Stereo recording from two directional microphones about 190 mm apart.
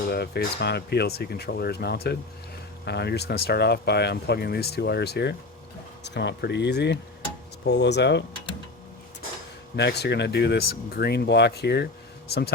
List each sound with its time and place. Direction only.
0.1 s speech: 60° left (ahead or behind)
9.7 s speech: 60° left (ahead or behind)